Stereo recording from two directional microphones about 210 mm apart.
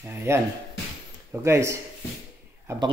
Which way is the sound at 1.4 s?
15° right (ahead or behind).